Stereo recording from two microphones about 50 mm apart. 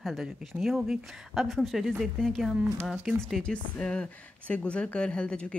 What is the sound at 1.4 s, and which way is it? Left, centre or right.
Speech, centre.